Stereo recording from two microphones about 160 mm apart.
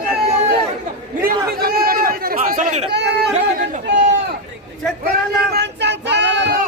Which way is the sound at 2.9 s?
90° right.